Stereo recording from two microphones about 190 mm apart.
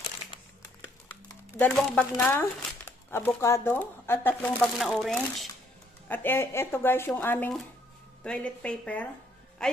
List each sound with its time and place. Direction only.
0.2 s a sound: 40° left (ahead or behind)
1.6 s speech: 5° left (ahead or behind)
4.7 s a woman's voice: centre (ahead or behind)